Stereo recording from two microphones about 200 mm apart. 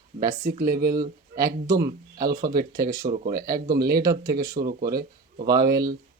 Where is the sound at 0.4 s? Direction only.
50° right (ahead or behind).